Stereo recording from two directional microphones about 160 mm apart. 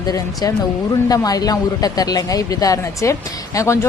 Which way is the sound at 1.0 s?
25° left (ahead or behind).